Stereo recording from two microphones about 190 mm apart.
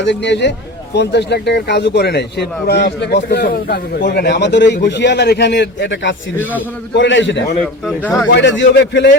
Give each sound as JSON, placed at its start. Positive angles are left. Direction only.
{"t": 0.0, "sound": "a man's voice", "side_deg": 70}